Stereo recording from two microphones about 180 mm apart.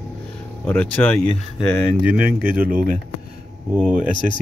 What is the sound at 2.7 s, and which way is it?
Speech, 50° right (ahead or behind).